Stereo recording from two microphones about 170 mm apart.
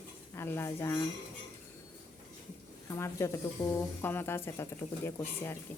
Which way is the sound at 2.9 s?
15° left (ahead or behind).